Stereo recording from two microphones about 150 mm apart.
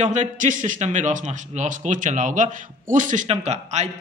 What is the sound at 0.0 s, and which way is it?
A man's voice, 55° right (ahead or behind).